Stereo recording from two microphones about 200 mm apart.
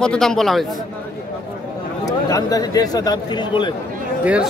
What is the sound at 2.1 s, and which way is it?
Speech, 20° left (ahead or behind).